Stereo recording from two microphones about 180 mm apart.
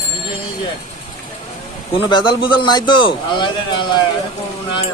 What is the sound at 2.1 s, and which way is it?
A man's voice, 25° left (ahead or behind).